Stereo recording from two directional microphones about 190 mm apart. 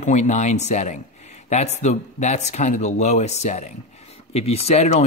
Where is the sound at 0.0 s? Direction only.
40° left (ahead or behind).